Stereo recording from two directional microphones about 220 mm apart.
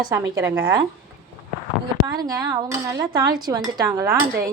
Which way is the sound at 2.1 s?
15° right (ahead or behind).